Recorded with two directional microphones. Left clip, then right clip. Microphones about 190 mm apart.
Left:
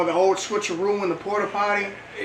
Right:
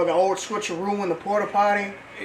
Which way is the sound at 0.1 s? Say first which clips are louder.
Left 1 dB; 20° right (ahead or behind).